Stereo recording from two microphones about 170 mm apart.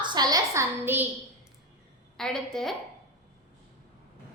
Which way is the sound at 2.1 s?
5° left (ahead or behind).